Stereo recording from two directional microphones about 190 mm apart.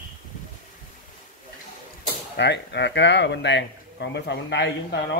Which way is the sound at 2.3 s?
65° left (ahead or behind).